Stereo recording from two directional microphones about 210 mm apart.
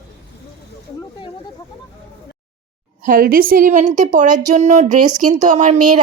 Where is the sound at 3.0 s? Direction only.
40° right (ahead or behind).